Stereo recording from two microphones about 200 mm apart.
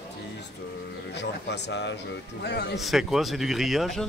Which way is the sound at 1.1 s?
60° left (ahead or behind).